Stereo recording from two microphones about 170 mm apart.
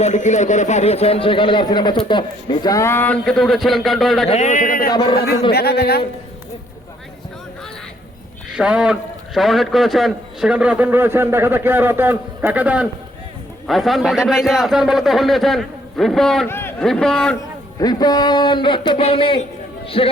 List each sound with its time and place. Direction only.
0.0 s a man's voice: 45° left (ahead or behind); by 4.3 s centre (ahead or behind)
4.3 s speech: 45° left (ahead or behind)
4.9 s a man's voice: 25° left (ahead or behind)
5.1 s a man's voice: 65° left (ahead or behind)
8.4 s a man's voice: 5° right (ahead or behind)
16.5 s a man's voice: 15° left (ahead or behind)
16.8 s a man's voice: 5° left (ahead or behind)
17.7 s a man's voice: 25° left (ahead or behind)